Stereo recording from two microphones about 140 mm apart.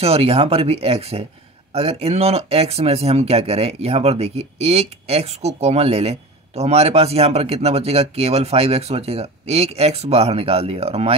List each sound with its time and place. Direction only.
0.0 s speech: 45° right (ahead or behind)